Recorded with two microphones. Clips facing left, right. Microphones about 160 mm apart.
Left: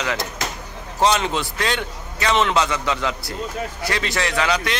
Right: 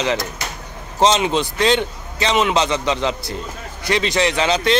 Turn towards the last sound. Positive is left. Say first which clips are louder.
# right 4 dB
turn(degrees=-25)  # may be behind; listen again after turning